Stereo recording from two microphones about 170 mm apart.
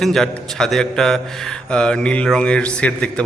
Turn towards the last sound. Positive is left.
turn(degrees=5)  # may be behind; listen again after turning